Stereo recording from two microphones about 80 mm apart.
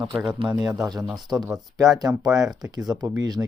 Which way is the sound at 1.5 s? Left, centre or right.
Right.